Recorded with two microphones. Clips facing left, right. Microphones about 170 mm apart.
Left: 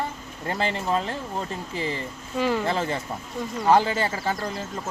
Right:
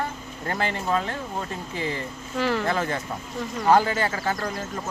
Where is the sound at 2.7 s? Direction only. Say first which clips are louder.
Even; 30° left (ahead or behind).